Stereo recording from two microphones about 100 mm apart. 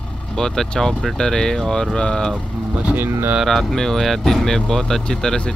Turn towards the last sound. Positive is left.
turn(degrees=10)  # may be behind; listen again after turning